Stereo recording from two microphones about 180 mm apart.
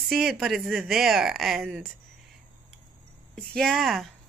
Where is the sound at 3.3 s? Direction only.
Centre (ahead or behind).